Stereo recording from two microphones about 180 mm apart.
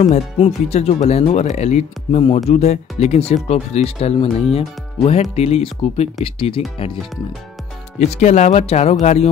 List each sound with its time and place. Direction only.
0.0 s speech: 40° left (ahead or behind)
8.0 s speech: 40° left (ahead or behind)